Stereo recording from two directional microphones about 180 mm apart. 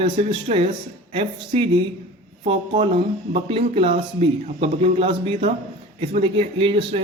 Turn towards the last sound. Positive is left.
turn(degrees=-30)  # may be behind; listen again after turning